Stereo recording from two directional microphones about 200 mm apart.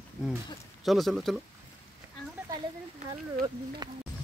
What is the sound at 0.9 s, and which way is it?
Speech, centre (ahead or behind).